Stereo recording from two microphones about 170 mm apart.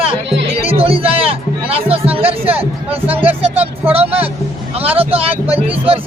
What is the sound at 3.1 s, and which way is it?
Speech, 10° right (ahead or behind).